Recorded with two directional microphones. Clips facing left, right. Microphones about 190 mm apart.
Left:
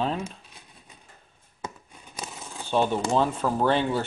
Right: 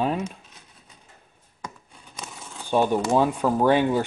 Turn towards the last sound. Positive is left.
turn(degrees=-15)  # may be behind; listen again after turning